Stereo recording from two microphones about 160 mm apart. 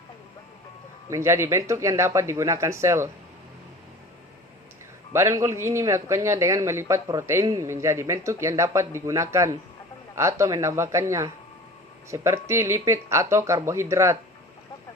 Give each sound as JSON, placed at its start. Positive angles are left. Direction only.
{"t": 1.1, "sound": "speech", "side_deg": -15}
{"t": 5.1, "sound": "speech", "side_deg": -20}